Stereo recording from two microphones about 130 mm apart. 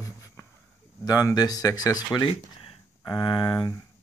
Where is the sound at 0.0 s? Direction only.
25° left (ahead or behind).